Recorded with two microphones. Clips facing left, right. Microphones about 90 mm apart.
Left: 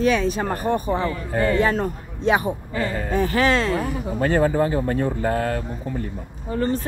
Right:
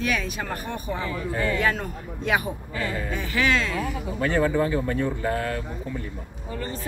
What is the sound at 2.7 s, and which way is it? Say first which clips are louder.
Speech: left 5 dB; 40° left (ahead or behind).